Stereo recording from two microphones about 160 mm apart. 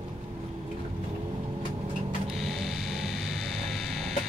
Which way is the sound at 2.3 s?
Centre (ahead or behind).